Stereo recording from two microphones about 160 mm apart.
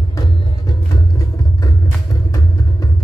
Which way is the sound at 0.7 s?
20° left (ahead or behind).